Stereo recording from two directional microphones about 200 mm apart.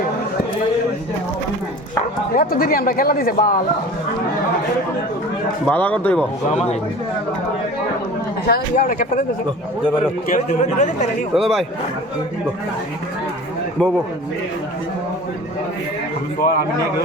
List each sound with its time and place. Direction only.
2.3 s a man's voice: 45° left (ahead or behind)
5.7 s speech: 10° left (ahead or behind)
8.4 s a man's voice: 50° left (ahead or behind)
10.2 s speech: 40° left (ahead or behind)
11.3 s speech: centre (ahead or behind)
16.4 s a man's voice: 45° left (ahead or behind)